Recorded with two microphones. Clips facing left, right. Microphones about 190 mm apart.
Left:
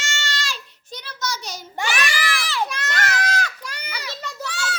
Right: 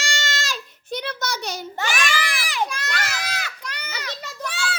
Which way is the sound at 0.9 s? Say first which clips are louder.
Right 3 dB; 60° right (ahead or behind).